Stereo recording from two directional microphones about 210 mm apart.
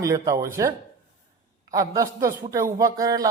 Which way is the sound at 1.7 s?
15° right (ahead or behind).